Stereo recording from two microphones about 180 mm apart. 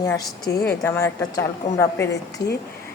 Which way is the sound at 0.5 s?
60° left (ahead or behind).